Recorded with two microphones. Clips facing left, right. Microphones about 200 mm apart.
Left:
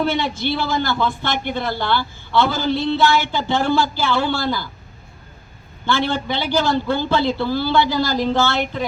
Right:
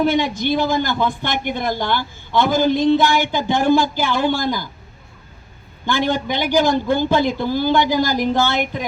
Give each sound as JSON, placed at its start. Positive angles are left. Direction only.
{"t": 0.0, "sound": "speech", "side_deg": -15}
{"t": 5.8, "sound": "speech", "side_deg": -15}